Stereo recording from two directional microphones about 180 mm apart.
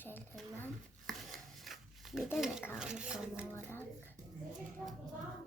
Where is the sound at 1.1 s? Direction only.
Centre (ahead or behind).